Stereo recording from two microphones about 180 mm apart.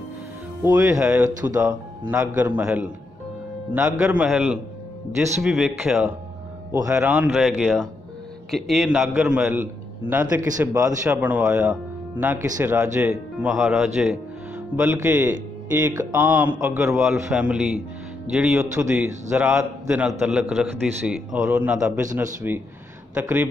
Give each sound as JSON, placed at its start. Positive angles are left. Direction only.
{"t": 0.6, "sound": "a man's voice", "side_deg": -10}
{"t": 4.0, "sound": "a man's voice", "side_deg": -5}
{"t": 14.8, "sound": "a man's voice", "side_deg": -10}